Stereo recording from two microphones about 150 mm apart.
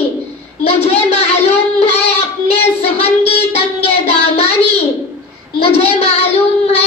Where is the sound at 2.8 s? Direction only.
40° left (ahead or behind).